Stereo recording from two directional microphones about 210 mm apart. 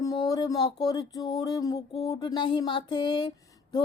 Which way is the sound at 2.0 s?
15° left (ahead or behind).